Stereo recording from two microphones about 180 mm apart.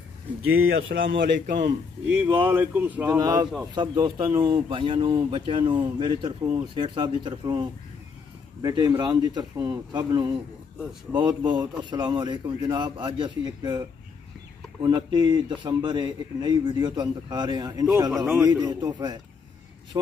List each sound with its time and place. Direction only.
0.7 s speech: 90° right
2.2 s speech: 10° right (ahead or behind)
3.1 s a man's voice: 20° right (ahead or behind)
8.6 s a man's voice: 20° right (ahead or behind)
18.1 s a man's voice: 5° right (ahead or behind)
18.4 s a man's voice: 20° right (ahead or behind)